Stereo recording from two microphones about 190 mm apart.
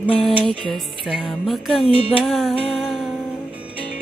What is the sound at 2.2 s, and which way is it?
Music, centre (ahead or behind).